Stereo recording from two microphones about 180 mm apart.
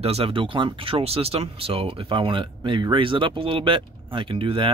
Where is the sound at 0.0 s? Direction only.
35° right (ahead or behind).